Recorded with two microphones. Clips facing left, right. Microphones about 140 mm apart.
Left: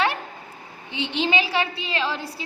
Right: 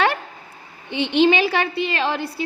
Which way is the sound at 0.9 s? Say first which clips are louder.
Right 8 dB; 65° right (ahead or behind).